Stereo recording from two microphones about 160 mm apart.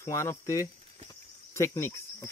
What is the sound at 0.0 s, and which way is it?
Cricket, 15° left (ahead or behind).